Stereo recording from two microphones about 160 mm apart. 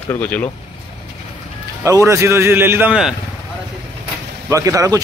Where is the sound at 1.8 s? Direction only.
20° right (ahead or behind).